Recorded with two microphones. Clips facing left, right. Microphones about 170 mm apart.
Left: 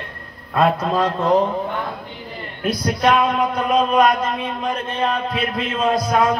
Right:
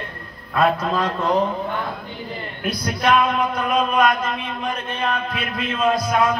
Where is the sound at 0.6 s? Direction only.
30° left (ahead or behind).